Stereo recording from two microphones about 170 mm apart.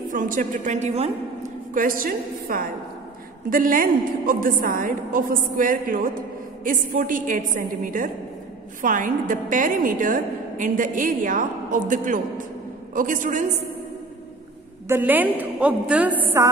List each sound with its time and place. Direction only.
0.1 s a woman's voice: 50° right (ahead or behind)
1.7 s a woman's voice: 55° right (ahead or behind)
14.9 s a woman's voice: 10° right (ahead or behind)